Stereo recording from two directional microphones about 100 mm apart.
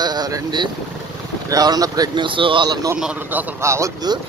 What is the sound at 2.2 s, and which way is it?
Speech, 60° right (ahead or behind).